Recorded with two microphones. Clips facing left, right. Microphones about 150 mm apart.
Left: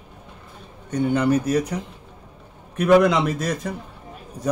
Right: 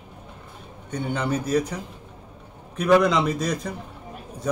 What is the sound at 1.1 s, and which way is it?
Speech, 10° left (ahead or behind).